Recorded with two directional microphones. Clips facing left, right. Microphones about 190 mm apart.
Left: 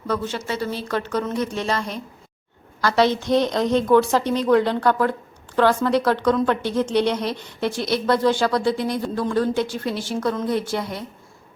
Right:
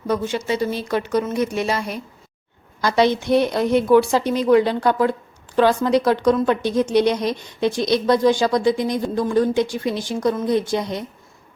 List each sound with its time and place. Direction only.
0.1 s speech: 15° right (ahead or behind)